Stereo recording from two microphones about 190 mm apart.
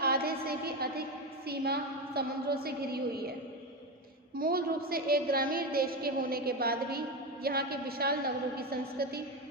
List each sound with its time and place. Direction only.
0.0 s a sound: 55° right (ahead or behind)
1.5 s a woman's voice: 55° right (ahead or behind)
4.4 s a woman's voice: 50° right (ahead or behind)